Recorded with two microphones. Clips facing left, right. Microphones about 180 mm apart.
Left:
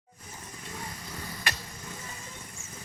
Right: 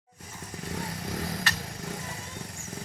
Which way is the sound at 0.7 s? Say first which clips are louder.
Right 7 dB; 80° right.